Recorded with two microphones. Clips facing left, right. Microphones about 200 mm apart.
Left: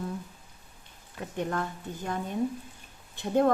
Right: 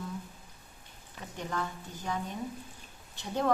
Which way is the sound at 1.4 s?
50° left (ahead or behind).